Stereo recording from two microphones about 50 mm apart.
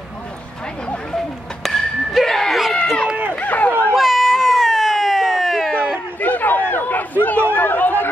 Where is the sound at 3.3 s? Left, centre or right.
Left.